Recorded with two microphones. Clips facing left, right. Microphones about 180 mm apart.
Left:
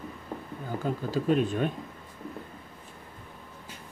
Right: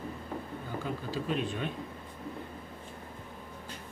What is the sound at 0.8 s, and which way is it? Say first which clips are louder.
Speech: left 8 dB; 45° left (ahead or behind).